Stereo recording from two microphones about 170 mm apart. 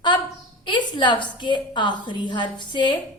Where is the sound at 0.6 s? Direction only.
30° left (ahead or behind).